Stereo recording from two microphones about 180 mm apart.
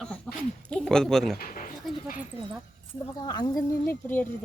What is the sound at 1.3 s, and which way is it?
Speech, 50° left (ahead or behind).